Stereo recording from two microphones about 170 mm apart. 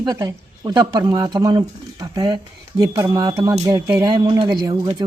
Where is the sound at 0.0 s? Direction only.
20° right (ahead or behind).